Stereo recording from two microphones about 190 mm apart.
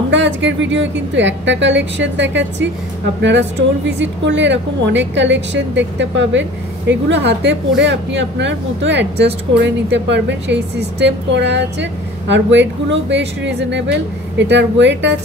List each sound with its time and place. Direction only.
0.1 s a woman's voice: 70° right (ahead or behind)